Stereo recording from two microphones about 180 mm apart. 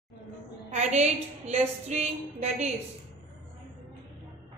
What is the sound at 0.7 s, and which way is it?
A woman's voice, 40° right (ahead or behind).